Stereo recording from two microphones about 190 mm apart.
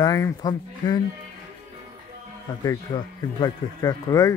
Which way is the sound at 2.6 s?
20° left (ahead or behind).